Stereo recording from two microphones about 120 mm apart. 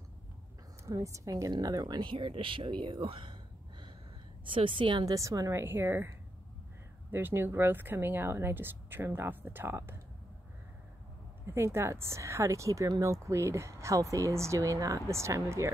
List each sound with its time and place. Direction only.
0.8 s a woman's voice: 25° right (ahead or behind); by 3.3 s 45° right (ahead or behind)
4.5 s a woman's voice: 45° right (ahead or behind)
5.0 s a woman's voice: 30° right (ahead or behind)
11.4 s speech: 20° right (ahead or behind)